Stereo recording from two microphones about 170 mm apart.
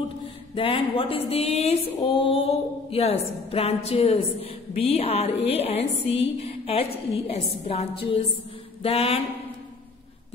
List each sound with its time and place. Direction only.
0.6 s a woman's voice: 30° left (ahead or behind)